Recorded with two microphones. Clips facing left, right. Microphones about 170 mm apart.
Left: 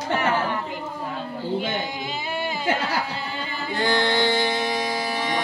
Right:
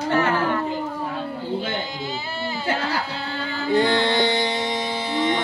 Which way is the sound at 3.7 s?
20° right (ahead or behind).